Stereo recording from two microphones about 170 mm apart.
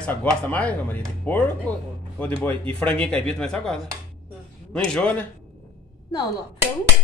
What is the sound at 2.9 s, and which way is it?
Speech, 5° left (ahead or behind).